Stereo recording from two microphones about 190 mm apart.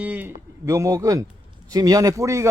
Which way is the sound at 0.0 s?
10° right (ahead or behind).